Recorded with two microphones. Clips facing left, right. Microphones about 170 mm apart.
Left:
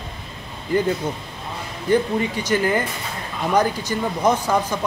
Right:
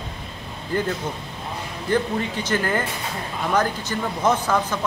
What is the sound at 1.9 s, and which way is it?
Speech, 10° left (ahead or behind).